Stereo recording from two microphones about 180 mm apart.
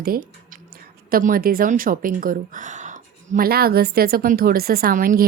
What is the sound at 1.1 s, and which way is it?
A woman's voice, 55° right (ahead or behind).